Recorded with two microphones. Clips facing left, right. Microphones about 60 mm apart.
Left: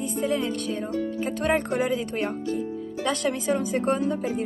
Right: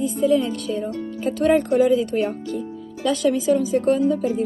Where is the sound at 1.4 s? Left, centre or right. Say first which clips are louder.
Right 8 dB; left.